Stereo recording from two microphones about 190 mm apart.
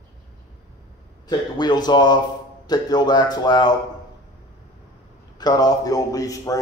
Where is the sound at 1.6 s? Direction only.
20° left (ahead or behind).